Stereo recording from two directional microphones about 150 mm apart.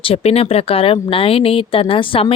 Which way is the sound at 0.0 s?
40° left (ahead or behind).